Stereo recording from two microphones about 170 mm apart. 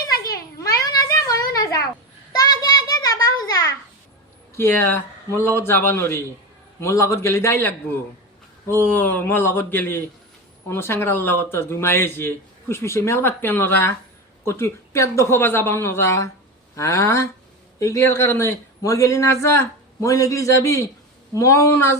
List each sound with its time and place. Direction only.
0.3 s a sound: 20° left (ahead or behind)
2.3 s child singing: 20° left (ahead or behind)
4.5 s a man's voice: 15° left (ahead or behind)